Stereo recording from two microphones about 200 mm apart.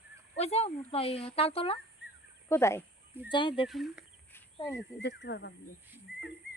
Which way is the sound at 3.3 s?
25° left (ahead or behind).